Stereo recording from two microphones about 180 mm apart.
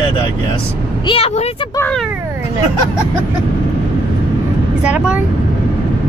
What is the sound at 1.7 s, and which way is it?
Speech, 10° left (ahead or behind).